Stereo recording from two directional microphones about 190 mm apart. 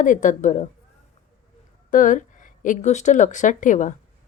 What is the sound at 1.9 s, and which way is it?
Speech, 40° left (ahead or behind).